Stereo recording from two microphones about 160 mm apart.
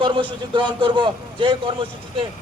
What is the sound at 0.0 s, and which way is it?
A man's voice, 30° right (ahead or behind).